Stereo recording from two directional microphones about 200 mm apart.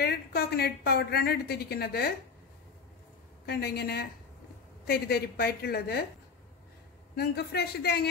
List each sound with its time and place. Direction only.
0.0 s a woman's voice: 50° left (ahead or behind)
3.4 s a woman's voice: 55° left (ahead or behind)
7.2 s a woman's voice: 55° left (ahead or behind)